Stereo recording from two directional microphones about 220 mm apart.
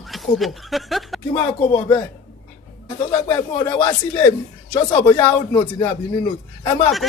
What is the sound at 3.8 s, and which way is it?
Speech, 20° left (ahead or behind).